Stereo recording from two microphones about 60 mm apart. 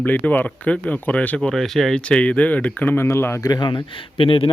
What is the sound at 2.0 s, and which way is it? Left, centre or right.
Speech, centre.